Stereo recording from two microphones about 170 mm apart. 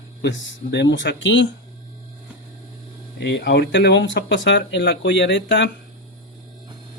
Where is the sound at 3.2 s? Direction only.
85° left.